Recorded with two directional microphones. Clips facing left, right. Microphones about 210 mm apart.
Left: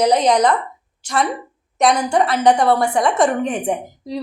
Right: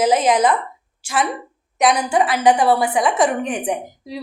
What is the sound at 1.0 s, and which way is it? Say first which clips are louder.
A woman's voice: left 1 dB; 5° right (ahead or behind).